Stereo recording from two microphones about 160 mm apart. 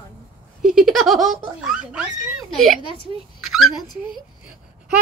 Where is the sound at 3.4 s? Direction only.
Centre (ahead or behind).